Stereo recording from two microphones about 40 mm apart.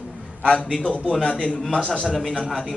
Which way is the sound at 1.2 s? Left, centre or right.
Left.